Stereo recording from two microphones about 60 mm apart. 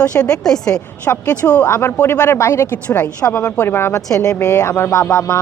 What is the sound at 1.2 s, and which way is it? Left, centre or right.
Speech, left.